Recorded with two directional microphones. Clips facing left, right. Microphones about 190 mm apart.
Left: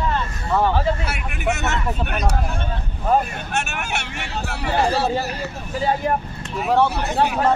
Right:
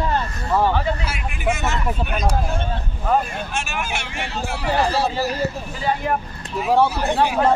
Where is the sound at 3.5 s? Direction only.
60° left (ahead or behind).